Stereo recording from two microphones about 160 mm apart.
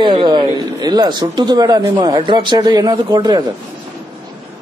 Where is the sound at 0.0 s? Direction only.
30° right (ahead or behind).